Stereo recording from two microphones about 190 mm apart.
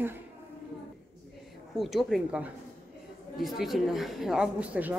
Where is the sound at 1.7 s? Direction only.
Centre (ahead or behind).